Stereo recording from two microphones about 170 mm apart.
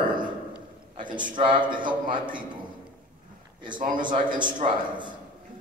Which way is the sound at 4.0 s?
30° right (ahead or behind).